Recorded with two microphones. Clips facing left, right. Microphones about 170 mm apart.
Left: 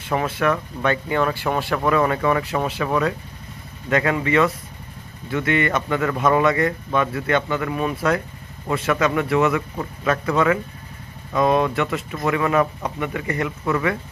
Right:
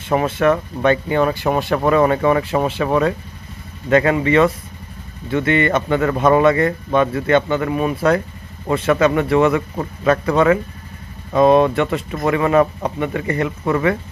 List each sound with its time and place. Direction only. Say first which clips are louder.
0.1 s a man's voice: right 5 dB; 25° right (ahead or behind)